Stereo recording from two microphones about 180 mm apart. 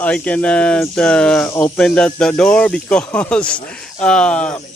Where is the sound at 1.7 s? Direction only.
5° left (ahead or behind).